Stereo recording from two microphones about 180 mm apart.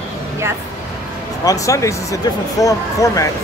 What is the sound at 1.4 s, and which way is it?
Speech, 20° left (ahead or behind).